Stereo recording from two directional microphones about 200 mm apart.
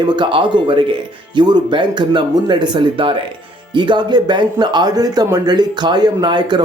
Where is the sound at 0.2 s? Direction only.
25° right (ahead or behind).